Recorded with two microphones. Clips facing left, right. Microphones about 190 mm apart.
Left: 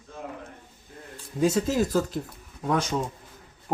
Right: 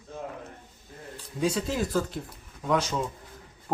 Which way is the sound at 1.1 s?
45° left (ahead or behind).